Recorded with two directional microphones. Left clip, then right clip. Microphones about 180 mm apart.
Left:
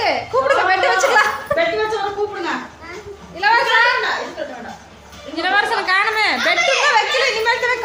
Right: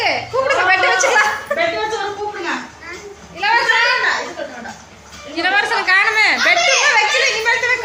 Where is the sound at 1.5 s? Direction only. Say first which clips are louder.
Left 3 dB; 15° left (ahead or behind).